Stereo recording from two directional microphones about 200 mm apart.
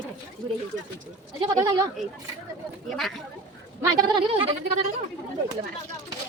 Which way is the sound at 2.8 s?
Centre (ahead or behind).